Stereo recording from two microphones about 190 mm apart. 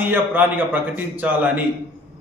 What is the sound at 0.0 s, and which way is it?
A man's voice, 10° right (ahead or behind).